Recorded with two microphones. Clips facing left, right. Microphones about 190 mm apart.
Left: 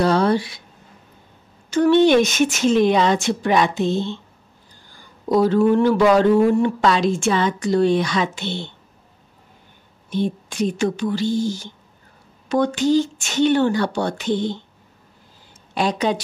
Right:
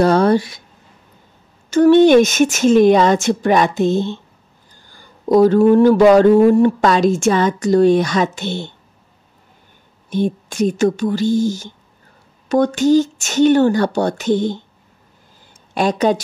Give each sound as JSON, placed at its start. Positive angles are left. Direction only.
{"t": 0.0, "sound": "speech", "side_deg": -45}
{"t": 1.7, "sound": "speech", "side_deg": -45}
{"t": 5.3, "sound": "speech", "side_deg": -45}
{"t": 10.0, "sound": "speech", "side_deg": -45}
{"t": 15.7, "sound": "speech", "side_deg": -45}